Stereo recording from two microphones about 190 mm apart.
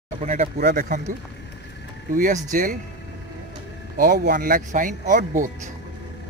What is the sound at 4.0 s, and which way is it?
Speech, 50° right (ahead or behind).